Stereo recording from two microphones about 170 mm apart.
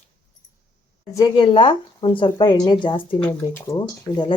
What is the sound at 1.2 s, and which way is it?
Speech, 25° left (ahead or behind).